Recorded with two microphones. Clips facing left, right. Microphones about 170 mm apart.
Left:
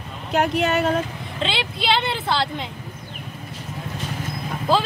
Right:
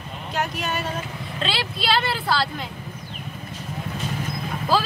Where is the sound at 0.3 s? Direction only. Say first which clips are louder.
Left 7 dB; 65° left (ahead or behind).